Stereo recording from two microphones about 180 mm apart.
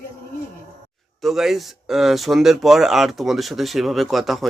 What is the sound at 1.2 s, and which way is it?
Speech, centre (ahead or behind).